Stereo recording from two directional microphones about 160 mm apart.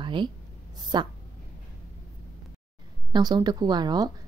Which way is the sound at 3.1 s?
25° right (ahead or behind).